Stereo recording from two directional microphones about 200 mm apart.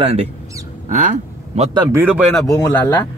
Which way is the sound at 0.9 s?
40° right (ahead or behind).